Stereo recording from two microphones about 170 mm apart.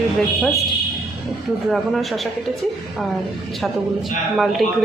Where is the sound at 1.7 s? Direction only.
Centre (ahead or behind).